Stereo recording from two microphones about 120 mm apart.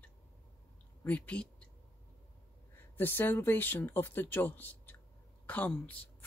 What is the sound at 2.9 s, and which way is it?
A woman's voice, 15° left (ahead or behind).